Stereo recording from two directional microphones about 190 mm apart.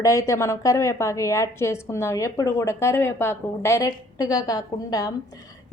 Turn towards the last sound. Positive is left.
turn(degrees=20)  # may be behind; listen again after turning